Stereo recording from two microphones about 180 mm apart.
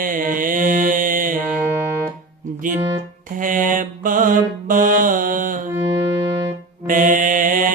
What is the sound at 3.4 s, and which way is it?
Mantra, 45° right (ahead or behind).